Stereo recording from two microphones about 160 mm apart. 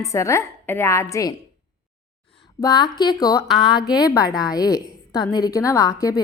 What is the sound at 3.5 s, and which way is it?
Speech, centre (ahead or behind).